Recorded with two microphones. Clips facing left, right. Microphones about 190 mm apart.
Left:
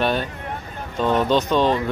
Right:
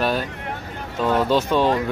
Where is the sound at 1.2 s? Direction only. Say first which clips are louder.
Even; 10° right (ahead or behind).